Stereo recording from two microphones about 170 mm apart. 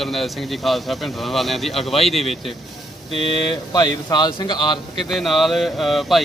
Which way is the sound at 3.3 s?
25° left (ahead or behind).